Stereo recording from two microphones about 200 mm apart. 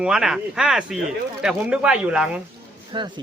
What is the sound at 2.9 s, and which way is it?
Speech, 20° right (ahead or behind).